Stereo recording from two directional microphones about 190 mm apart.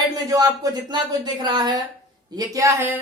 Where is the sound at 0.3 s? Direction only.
20° right (ahead or behind).